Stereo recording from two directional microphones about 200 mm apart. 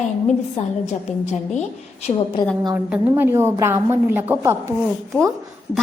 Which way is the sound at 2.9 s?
10° right (ahead or behind).